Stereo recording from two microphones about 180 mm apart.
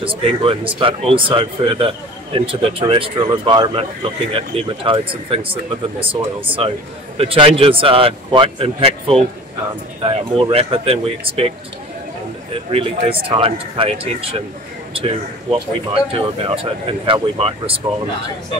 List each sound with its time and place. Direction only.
0.0 s speech: 30° right (ahead or behind)
12.7 s speech: 30° right (ahead or behind)
15.5 s speech: 30° right (ahead or behind)